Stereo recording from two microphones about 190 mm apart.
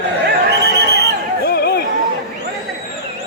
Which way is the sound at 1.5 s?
55° left (ahead or behind).